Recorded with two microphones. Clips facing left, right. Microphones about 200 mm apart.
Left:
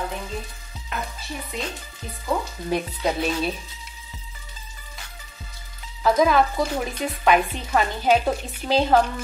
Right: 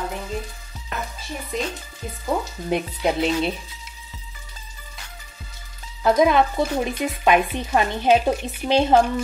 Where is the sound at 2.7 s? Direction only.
20° right (ahead or behind).